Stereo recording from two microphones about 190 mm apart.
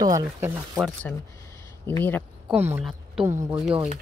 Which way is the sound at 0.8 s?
Centre (ahead or behind).